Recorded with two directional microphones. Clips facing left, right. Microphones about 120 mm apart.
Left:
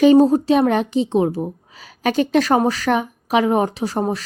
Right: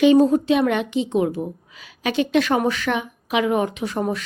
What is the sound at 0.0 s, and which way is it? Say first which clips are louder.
A woman's voice: left 3 dB; 40° left (ahead or behind).